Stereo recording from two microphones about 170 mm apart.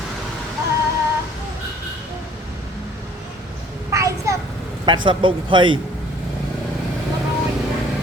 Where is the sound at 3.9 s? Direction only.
15° right (ahead or behind).